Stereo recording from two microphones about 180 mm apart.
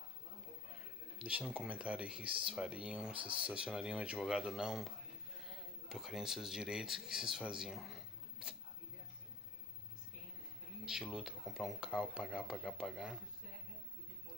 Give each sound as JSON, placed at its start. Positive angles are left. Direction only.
{"t": 1.1, "sound": "speech", "side_deg": -5}
{"t": 10.9, "sound": "speech", "side_deg": -5}